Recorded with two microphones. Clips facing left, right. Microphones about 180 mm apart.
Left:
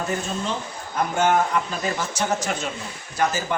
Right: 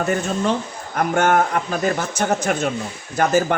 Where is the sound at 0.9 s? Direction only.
60° right (ahead or behind).